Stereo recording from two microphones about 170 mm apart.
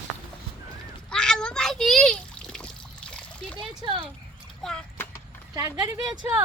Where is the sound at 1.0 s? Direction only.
5° left (ahead or behind).